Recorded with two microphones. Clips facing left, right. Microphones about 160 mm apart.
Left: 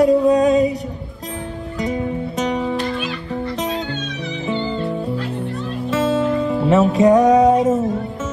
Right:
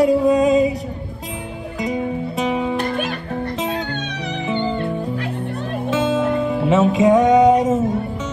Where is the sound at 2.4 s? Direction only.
Centre (ahead or behind).